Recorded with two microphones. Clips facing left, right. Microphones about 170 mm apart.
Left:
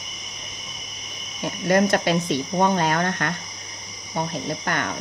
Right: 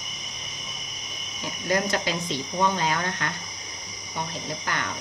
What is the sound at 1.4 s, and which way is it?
Speech, 60° left (ahead or behind).